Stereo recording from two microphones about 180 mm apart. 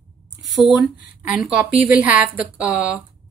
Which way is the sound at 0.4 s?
Centre (ahead or behind).